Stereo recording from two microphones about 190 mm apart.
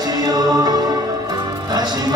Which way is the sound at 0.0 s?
20° right (ahead or behind).